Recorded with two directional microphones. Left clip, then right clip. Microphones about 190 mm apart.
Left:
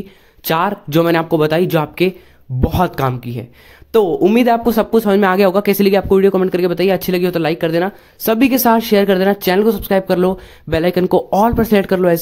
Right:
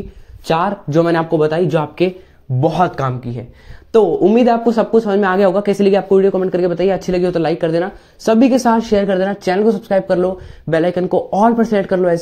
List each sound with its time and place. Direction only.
0.5 s speech: 15° left (ahead or behind)